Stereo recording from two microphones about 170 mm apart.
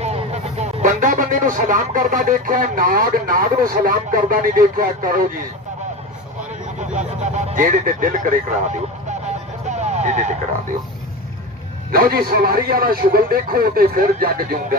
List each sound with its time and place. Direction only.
0.0 s speech: 40° right (ahead or behind); by 5.2 s 55° right (ahead or behind)
7.0 s speech: 45° right (ahead or behind)
9.7 s a sound: 45° right (ahead or behind)
11.9 s a man's voice: 60° right (ahead or behind)